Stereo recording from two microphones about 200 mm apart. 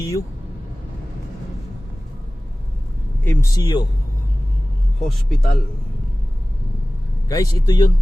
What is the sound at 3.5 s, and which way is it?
Speech, 20° left (ahead or behind).